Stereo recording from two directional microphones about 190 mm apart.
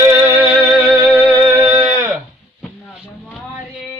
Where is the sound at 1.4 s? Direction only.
15° right (ahead or behind).